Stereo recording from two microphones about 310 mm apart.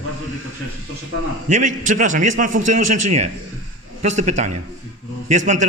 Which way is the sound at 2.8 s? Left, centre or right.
Right.